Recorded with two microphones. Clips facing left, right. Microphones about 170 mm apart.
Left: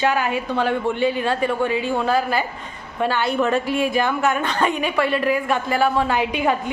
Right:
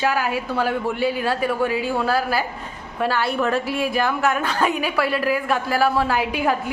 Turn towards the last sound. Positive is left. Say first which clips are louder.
# left 1 dB
turn(degrees=-5)  # may be behind; listen again after turning